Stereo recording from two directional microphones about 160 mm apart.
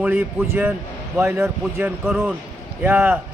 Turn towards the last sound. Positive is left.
turn(degrees=-10)  # may be behind; listen again after turning